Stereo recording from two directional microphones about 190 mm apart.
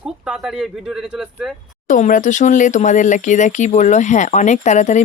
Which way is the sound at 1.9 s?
45° left (ahead or behind).